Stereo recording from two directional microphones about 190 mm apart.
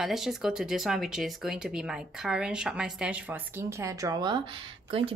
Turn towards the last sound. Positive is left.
turn(degrees=-30)  # may be behind; listen again after turning